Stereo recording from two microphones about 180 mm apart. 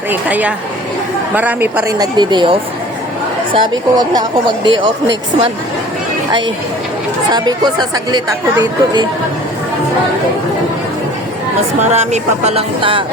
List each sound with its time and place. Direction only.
0.1 s a woman's voice: 10° right (ahead or behind); by 4.8 s 25° right (ahead or behind)
7.3 s speech: 20° right (ahead or behind)
11.9 s speech: 40° right (ahead or behind)